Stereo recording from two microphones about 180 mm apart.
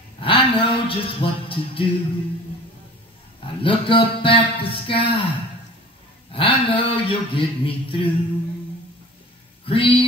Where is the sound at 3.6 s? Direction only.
30° left (ahead or behind).